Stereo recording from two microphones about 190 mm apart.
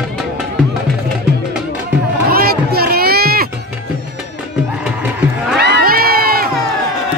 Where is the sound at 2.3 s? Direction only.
55° right (ahead or behind).